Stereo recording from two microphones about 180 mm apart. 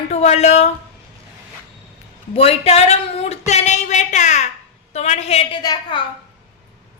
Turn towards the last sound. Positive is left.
turn(degrees=25)  # may be behind; listen again after turning